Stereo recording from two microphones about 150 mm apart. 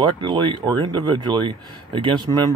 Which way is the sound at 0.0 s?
30° right (ahead or behind).